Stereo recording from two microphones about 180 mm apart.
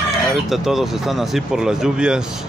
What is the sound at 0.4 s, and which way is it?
Speech, centre (ahead or behind).